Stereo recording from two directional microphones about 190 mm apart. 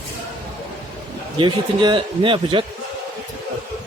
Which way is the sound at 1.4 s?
25° right (ahead or behind).